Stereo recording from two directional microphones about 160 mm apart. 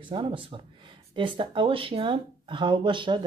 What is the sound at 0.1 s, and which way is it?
A woman's voice, 30° right (ahead or behind).